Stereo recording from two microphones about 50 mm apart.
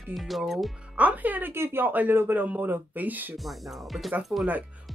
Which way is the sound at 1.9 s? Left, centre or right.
Right.